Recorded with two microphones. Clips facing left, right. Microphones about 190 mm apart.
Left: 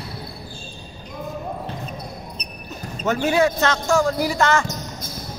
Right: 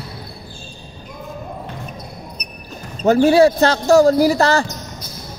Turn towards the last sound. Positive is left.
turn(degrees=-35)  # may be behind; listen again after turning